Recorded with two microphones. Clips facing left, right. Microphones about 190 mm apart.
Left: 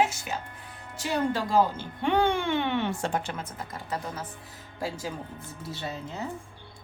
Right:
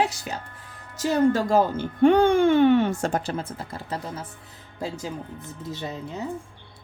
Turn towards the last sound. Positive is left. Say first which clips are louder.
# right 3 dB
turn(degrees=-20)  # may be behind; listen again after turning